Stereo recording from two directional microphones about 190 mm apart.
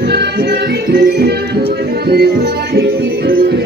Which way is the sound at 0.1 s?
60° right (ahead or behind).